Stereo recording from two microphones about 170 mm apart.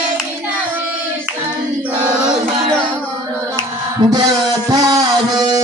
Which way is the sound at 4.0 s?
25° right (ahead or behind).